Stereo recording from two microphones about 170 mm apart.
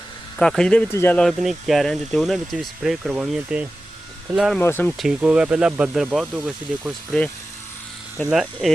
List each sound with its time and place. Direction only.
0.3 s speech: 5° left (ahead or behind)
4.6 s speech: 10° left (ahead or behind)
5.0 s speech: 5° right (ahead or behind)
8.3 s speech: 5° right (ahead or behind)